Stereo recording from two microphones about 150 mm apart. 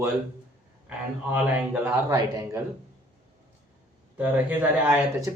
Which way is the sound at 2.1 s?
25° right (ahead or behind).